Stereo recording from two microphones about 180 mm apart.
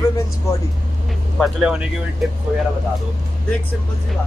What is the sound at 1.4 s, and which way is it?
Speech, 5° right (ahead or behind).